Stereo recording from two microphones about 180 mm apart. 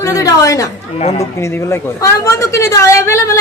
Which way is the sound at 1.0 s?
35° left (ahead or behind).